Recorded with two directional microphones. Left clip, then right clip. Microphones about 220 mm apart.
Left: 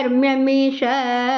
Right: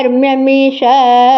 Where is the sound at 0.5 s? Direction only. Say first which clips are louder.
Right 10 dB; 15° left (ahead or behind).